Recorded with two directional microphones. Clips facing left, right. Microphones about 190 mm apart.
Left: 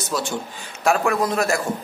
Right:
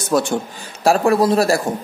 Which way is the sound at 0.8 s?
35° right (ahead or behind).